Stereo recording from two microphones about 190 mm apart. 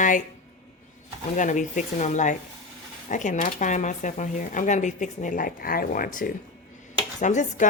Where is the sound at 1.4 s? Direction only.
40° left (ahead or behind).